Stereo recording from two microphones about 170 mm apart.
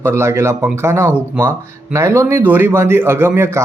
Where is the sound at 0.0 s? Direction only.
15° right (ahead or behind).